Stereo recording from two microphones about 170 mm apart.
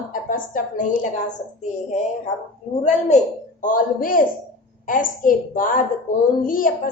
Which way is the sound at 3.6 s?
50° left (ahead or behind).